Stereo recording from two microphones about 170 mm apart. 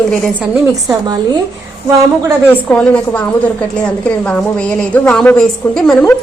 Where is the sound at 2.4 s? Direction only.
10° left (ahead or behind).